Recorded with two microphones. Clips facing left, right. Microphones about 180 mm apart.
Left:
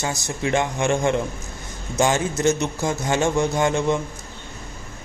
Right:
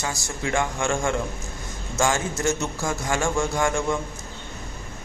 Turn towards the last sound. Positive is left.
turn(degrees=20)  # may be behind; listen again after turning